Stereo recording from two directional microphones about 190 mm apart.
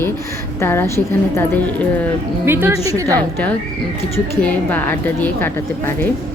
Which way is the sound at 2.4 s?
10° right (ahead or behind).